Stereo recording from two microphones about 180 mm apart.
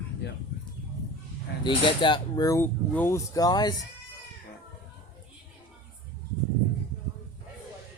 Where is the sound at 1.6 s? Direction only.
25° left (ahead or behind).